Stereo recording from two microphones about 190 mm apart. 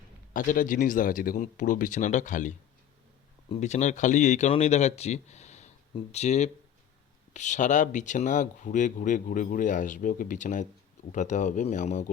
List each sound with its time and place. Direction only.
0.3 s speech: 45° left (ahead or behind)